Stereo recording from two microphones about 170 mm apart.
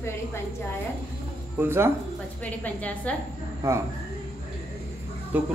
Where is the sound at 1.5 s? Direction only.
15° right (ahead or behind).